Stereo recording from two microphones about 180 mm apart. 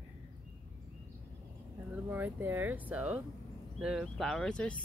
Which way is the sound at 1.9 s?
10° right (ahead or behind).